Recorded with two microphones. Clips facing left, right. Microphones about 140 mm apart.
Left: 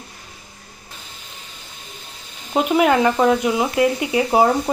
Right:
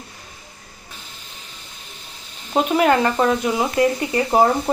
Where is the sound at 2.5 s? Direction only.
5° left (ahead or behind).